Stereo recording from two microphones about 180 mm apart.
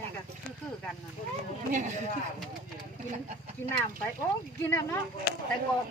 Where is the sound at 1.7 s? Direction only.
45° right (ahead or behind).